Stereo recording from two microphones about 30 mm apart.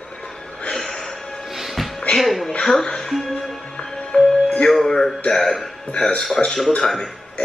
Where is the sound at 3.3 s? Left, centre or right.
Left.